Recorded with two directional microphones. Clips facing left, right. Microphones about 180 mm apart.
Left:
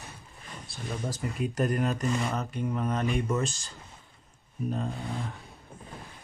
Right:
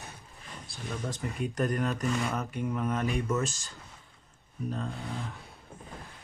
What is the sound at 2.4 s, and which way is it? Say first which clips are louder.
Speech: left 1 dB; 10° right (ahead or behind).